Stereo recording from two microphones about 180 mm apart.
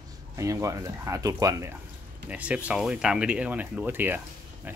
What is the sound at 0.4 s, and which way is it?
Speech, 15° right (ahead or behind).